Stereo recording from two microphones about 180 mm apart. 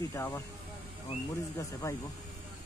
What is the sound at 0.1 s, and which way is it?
Speech, 15° left (ahead or behind).